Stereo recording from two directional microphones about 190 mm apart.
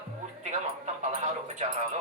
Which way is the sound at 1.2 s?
40° right (ahead or behind).